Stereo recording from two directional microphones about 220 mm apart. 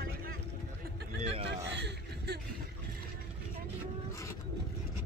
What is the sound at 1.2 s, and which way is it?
Hubbub, 25° right (ahead or behind).